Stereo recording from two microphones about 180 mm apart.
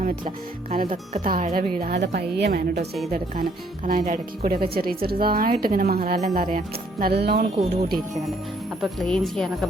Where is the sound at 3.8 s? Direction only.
50° right (ahead or behind).